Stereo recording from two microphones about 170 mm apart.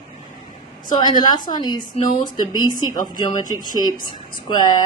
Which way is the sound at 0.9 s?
25° left (ahead or behind).